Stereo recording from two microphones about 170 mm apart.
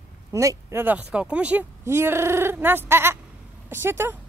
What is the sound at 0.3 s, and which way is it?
Speech, 20° right (ahead or behind).